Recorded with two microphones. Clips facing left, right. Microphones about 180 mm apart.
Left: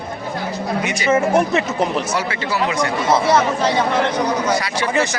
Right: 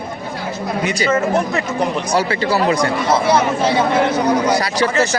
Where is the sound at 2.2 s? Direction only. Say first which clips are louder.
Right 4 dB; 35° right (ahead or behind).